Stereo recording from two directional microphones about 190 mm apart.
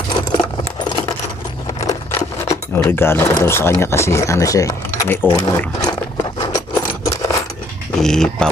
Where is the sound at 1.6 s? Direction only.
20° left (ahead or behind).